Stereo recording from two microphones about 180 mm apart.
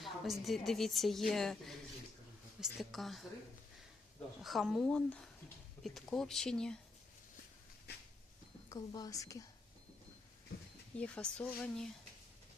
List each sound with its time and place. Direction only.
0.0 s a woman's voice: centre (ahead or behind)
4.4 s a woman's voice: centre (ahead or behind)
7.9 s a sound: 65° left (ahead or behind)
8.7 s a woman's voice: 20° left (ahead or behind)
10.9 s speech: 5° left (ahead or behind)